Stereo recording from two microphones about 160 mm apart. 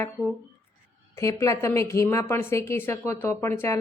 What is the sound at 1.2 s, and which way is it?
A woman's voice, 20° left (ahead or behind).